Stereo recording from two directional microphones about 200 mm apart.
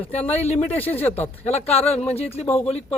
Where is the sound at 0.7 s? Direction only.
10° left (ahead or behind).